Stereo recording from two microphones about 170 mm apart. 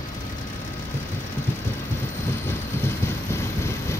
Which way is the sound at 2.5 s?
15° left (ahead or behind).